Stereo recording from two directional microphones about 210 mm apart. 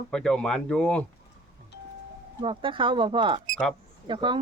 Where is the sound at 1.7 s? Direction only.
55° left (ahead or behind).